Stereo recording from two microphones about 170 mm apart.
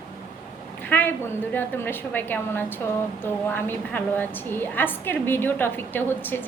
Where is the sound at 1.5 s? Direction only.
10° left (ahead or behind).